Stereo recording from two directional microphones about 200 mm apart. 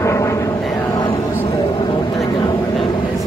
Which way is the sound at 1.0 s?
20° left (ahead or behind).